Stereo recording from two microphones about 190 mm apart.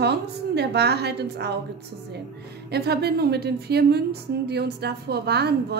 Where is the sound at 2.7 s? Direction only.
60° right (ahead or behind).